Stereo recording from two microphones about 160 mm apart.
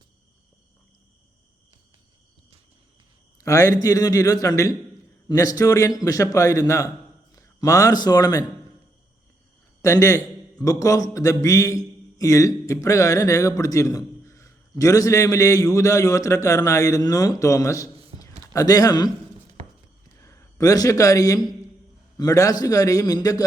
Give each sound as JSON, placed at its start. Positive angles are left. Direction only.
{"t": 3.4, "sound": "a man's voice", "side_deg": 20}
{"t": 9.8, "sound": "a man's voice", "side_deg": 20}
{"t": 20.1, "sound": "a man's voice", "side_deg": 20}